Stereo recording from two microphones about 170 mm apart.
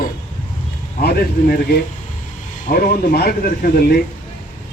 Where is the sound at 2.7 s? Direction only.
60° left (ahead or behind).